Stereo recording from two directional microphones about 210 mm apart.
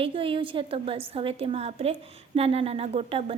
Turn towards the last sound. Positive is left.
turn(degrees=-30)  # may be behind; listen again after turning